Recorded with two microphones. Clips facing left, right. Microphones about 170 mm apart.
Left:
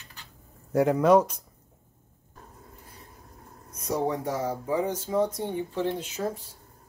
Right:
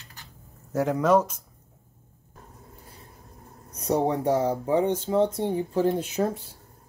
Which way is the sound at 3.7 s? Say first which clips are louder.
Right 4 dB; 30° right (ahead or behind).